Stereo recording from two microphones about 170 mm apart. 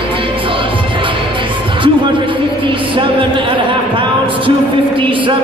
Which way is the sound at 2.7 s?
30° right (ahead or behind).